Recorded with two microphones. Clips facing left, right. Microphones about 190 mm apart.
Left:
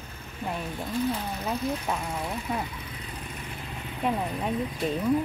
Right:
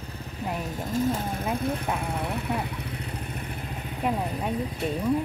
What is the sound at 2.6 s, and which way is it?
Vehicle, 65° right (ahead or behind).